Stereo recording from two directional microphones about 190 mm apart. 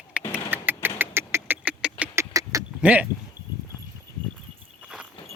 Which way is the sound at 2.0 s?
15° right (ahead or behind).